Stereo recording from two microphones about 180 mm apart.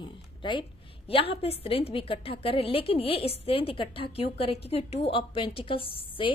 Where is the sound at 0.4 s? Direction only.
25° left (ahead or behind).